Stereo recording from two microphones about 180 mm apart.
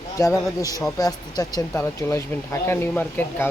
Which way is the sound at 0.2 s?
20° left (ahead or behind).